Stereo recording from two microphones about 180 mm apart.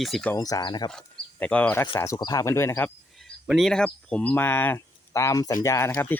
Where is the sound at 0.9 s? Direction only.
5° left (ahead or behind).